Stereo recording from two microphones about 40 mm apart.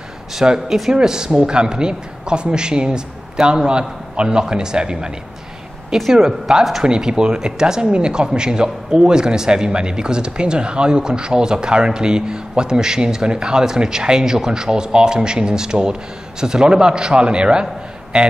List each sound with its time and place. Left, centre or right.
0.4 s speech: centre
6.1 s speech: centre